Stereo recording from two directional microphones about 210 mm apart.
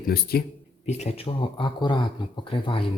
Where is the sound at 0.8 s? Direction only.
30° left (ahead or behind).